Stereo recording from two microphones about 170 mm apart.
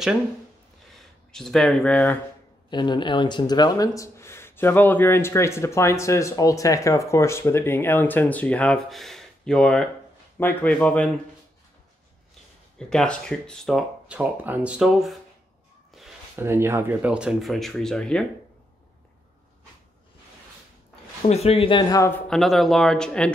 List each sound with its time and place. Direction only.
0.9 s speech: centre (ahead or behind)
2.7 s speech: 25° left (ahead or behind); by 11.1 s 10° left (ahead or behind)
12.7 s speech: 5° left (ahead or behind)
16.3 s speech: 15° right (ahead or behind); by 18.2 s 5° left (ahead or behind)
21.3 s speech: 40° left (ahead or behind); by 22.2 s 20° left (ahead or behind)
22.3 s speech: centre (ahead or behind)